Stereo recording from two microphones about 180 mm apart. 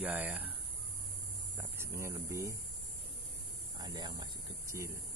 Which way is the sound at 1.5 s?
15° right (ahead or behind).